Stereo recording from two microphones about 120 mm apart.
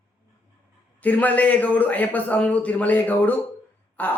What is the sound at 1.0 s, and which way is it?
Speech, 15° left (ahead or behind).